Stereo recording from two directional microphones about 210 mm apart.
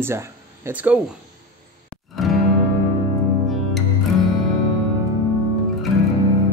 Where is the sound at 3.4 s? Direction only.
Centre (ahead or behind).